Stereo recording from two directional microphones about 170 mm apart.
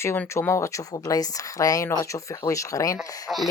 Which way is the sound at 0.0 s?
15° left (ahead or behind).